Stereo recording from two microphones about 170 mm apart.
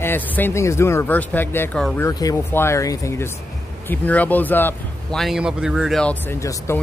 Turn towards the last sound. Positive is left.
turn(degrees=15)  # may be behind; listen again after turning